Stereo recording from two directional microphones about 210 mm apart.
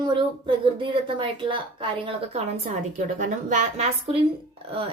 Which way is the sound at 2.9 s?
35° right (ahead or behind).